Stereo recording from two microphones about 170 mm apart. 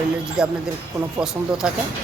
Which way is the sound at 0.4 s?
5° right (ahead or behind).